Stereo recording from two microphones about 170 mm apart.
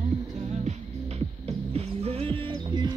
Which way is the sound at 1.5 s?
35° right (ahead or behind).